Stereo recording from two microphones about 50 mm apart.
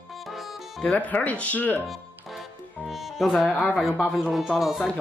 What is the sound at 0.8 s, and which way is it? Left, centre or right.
Speech, left.